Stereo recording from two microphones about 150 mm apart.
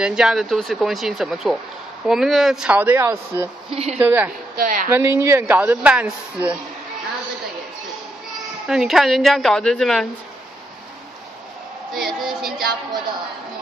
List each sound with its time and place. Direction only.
0.0 s speech: 5° right (ahead or behind)
3.7 s speech: 45° right (ahead or behind)
4.0 s speech: 15° right (ahead or behind)
4.6 s a woman's voice: 60° right (ahead or behind)
4.8 s speech: 15° right (ahead or behind)
8.6 s speech: centre (ahead or behind)
11.9 s a sound: 5° right (ahead or behind)